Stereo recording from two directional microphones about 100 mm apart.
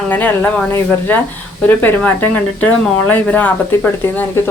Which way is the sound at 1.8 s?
15° left (ahead or behind).